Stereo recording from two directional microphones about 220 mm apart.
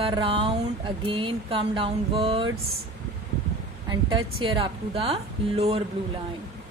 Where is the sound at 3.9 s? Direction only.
25° right (ahead or behind).